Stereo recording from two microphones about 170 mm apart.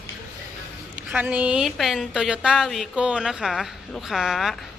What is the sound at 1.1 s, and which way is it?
A woman's voice, 10° right (ahead or behind).